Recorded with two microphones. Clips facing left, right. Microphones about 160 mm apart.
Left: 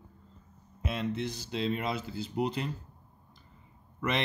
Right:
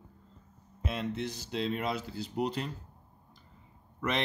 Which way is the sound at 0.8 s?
Centre (ahead or behind).